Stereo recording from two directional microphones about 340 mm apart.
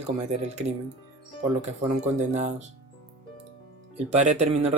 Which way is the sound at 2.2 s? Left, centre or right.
Centre.